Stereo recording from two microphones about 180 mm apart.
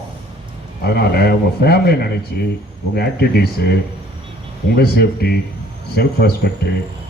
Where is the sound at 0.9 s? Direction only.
60° left (ahead or behind).